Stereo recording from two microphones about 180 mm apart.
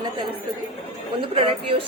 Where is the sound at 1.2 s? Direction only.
30° right (ahead or behind).